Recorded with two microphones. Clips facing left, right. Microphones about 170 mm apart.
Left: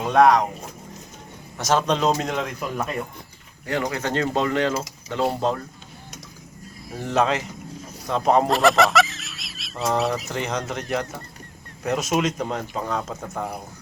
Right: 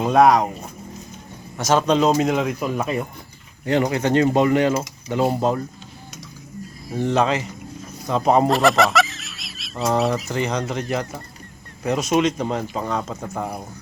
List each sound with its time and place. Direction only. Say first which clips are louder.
0.0 s speech: right 2 dB; 10° right (ahead or behind)
1.5 s speech: right 4 dB; centre (ahead or behind)
3.7 s speech: right 6 dB; 20° right (ahead or behind)
6.9 s speech: right 2 dB; centre (ahead or behind)